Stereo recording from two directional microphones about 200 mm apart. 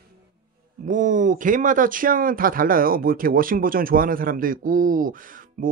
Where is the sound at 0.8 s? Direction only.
40° right (ahead or behind).